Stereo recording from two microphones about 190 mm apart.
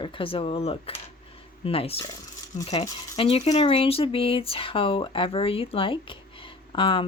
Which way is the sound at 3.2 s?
30° left (ahead or behind).